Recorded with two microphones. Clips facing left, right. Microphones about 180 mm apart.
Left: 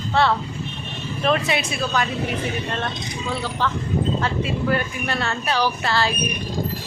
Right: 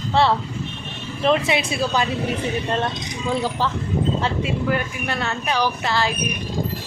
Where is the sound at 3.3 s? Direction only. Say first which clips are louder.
Right 3 dB; 40° right (ahead or behind).